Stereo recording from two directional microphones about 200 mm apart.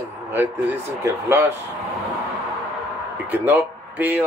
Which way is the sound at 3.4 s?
10° right (ahead or behind).